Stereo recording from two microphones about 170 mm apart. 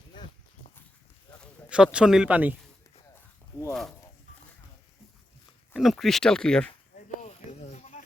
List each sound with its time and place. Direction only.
1.7 s speech: 5° right (ahead or behind)
3.7 s speech: centre (ahead or behind)
5.7 s speech: centre (ahead or behind)
6.9 s a sound: 45° left (ahead or behind)